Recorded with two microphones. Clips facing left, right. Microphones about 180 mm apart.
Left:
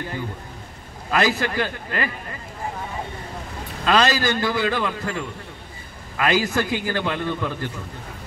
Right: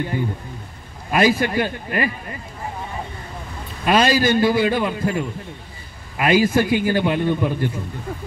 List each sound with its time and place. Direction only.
1.1 s a man's voice: 20° right (ahead or behind)
3.8 s a man's voice: 20° right (ahead or behind)